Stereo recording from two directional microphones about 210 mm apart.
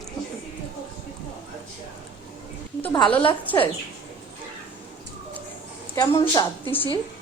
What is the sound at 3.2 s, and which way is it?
Speech, 25° left (ahead or behind).